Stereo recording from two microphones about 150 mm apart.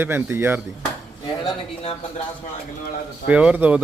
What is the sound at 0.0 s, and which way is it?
Speech, 15° right (ahead or behind).